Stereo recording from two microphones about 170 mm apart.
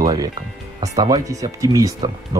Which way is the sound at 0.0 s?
20° right (ahead or behind).